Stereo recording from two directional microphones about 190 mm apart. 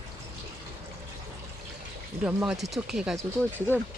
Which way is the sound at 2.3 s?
5° right (ahead or behind).